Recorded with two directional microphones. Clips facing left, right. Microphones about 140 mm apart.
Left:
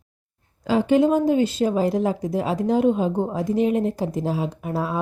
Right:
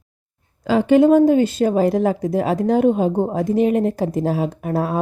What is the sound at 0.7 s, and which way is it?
A woman's voice, 65° right (ahead or behind).